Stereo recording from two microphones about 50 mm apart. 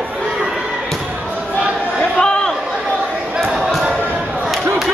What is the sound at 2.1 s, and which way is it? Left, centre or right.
Chatter, centre.